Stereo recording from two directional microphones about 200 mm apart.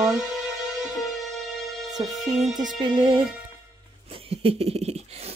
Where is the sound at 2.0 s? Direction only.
20° right (ahead or behind).